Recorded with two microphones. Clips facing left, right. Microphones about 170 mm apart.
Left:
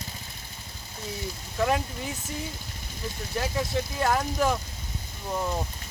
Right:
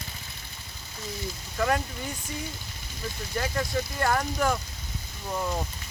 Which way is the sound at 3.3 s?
5° left (ahead or behind).